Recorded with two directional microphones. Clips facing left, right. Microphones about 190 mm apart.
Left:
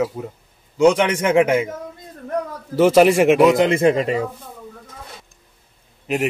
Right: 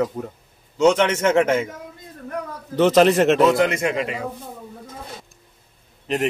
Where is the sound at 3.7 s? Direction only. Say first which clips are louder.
Left 7 dB; 35° left (ahead or behind).